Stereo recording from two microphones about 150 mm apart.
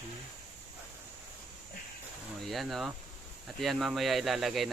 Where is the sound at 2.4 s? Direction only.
Centre (ahead or behind).